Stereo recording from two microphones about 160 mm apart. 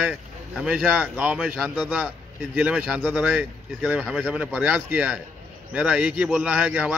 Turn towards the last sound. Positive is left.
turn(degrees=-5)  # may be behind; listen again after turning